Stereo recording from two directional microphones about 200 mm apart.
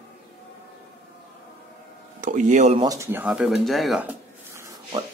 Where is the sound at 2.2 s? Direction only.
40° right (ahead or behind).